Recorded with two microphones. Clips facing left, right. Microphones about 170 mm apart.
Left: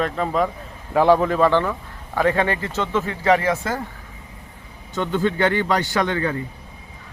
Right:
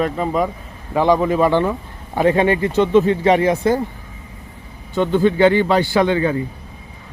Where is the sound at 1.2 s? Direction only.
10° right (ahead or behind).